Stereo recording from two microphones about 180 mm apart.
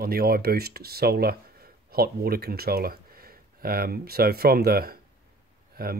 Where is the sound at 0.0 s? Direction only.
55° right (ahead or behind).